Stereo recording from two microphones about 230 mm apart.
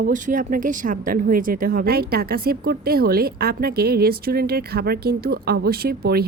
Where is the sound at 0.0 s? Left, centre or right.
Right.